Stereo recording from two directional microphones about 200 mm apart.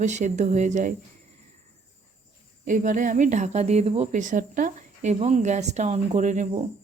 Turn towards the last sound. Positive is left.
turn(degrees=-35)  # may be behind; listen again after turning